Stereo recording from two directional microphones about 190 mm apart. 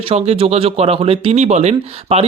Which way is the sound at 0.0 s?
30° right (ahead or behind).